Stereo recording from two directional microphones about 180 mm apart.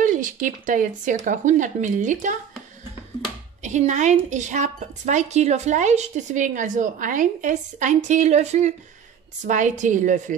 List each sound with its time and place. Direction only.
0.0 s speech: 45° right (ahead or behind)
3.6 s speech: 40° right (ahead or behind)